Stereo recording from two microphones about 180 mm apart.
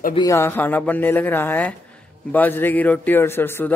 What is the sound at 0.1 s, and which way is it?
A man's voice, 20° left (ahead or behind).